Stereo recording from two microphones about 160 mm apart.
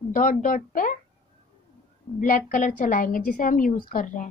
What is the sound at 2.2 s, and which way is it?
A woman's voice, 55° left (ahead or behind).